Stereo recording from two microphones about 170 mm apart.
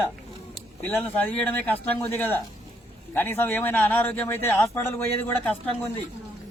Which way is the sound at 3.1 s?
10° left (ahead or behind).